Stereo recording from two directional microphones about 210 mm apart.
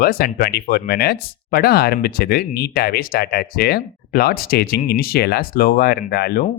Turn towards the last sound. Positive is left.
turn(degrees=50)  # may be behind; listen again after turning